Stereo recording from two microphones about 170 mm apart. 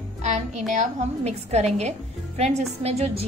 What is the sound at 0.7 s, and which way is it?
A woman's voice, 45° right (ahead or behind).